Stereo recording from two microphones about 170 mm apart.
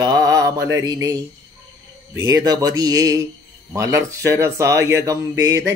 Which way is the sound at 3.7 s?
15° right (ahead or behind).